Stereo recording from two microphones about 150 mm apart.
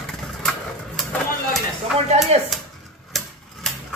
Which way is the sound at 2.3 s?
45° right (ahead or behind).